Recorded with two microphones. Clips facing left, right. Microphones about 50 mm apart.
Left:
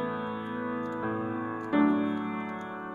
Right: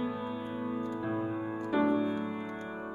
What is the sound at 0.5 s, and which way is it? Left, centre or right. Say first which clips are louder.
Organ: left 2 dB; left.